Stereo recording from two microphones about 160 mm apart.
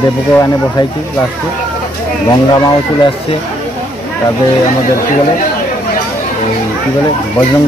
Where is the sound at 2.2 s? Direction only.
20° left (ahead or behind).